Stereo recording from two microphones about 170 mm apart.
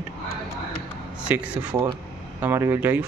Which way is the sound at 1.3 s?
10° right (ahead or behind).